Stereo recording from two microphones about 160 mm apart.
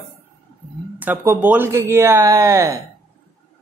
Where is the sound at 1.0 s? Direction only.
10° right (ahead or behind).